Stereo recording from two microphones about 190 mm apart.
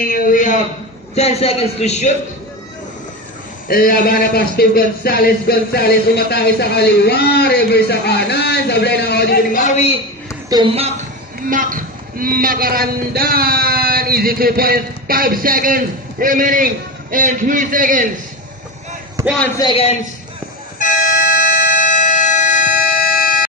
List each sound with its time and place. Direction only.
0.1 s a sound: 45° left (ahead or behind)
1.1 s a man's voice: 35° left (ahead or behind)
3.6 s a man's voice: 50° left (ahead or behind)
10.5 s speech: 30° right (ahead or behind)
11.4 s a man's voice: 45° right (ahead or behind)
19.2 s a man's voice: 15° right (ahead or behind)
19.6 s a man's voice: 30° left (ahead or behind)
20.8 s a sound: 45° left (ahead or behind)